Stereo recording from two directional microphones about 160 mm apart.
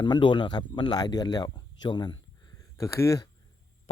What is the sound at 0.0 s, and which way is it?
Speech, 30° left (ahead or behind).